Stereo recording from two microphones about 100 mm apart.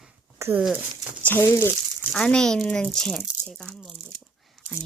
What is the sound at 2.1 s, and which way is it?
Speech, 5° left (ahead or behind).